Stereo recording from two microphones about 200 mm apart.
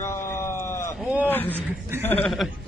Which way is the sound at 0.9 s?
5° right (ahead or behind).